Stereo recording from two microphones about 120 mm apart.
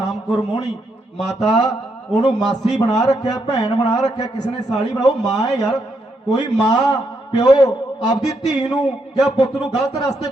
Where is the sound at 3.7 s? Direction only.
65° left (ahead or behind).